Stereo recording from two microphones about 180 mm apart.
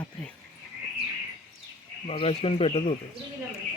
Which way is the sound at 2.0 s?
35° left (ahead or behind).